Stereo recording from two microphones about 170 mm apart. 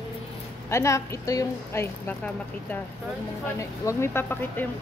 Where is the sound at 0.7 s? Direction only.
15° left (ahead or behind).